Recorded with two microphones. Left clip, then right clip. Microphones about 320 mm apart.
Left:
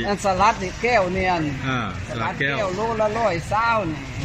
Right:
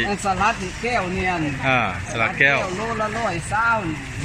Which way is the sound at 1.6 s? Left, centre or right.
Centre.